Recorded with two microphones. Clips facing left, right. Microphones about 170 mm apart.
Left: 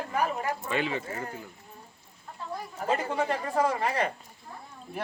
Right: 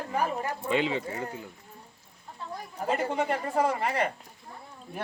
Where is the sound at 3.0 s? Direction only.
15° right (ahead or behind).